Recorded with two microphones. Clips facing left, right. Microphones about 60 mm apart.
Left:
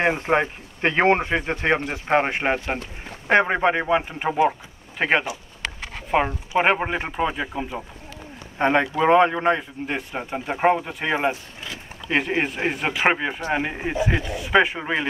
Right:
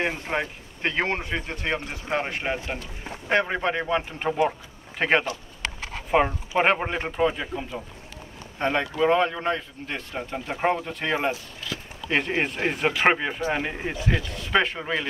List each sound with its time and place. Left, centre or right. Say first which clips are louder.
0.0 s speech: left 7 dB; left; by 4.6 s centre
4.9 s speech: left 1 dB; centre; by 11.8 s left
12.1 s speech: left 2 dB; centre